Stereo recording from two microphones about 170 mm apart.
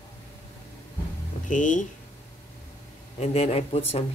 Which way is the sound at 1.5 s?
50° left (ahead or behind).